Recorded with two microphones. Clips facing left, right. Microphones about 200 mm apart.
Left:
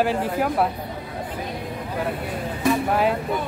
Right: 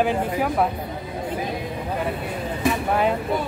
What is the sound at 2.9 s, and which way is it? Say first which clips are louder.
Speech: even; centre (ahead or behind).